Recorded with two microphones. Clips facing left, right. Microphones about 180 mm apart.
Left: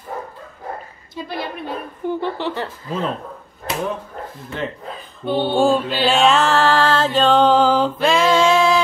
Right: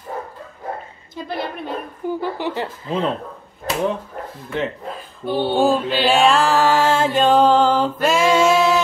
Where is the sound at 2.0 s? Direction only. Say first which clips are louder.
Left 1 dB; 10° right (ahead or behind).